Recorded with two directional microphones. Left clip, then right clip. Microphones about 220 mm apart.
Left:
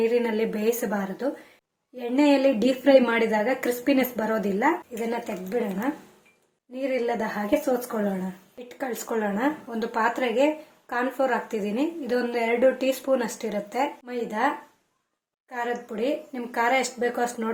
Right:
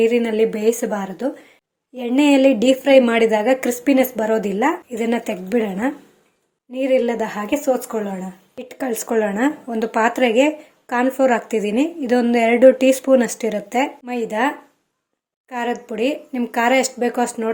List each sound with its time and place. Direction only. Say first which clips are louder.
0.0 s speech: right 7 dB; 30° right (ahead or behind)
4.9 s speech: right 7 dB; 45° right (ahead or behind)
6.7 s speech: right 8 dB; 35° right (ahead or behind)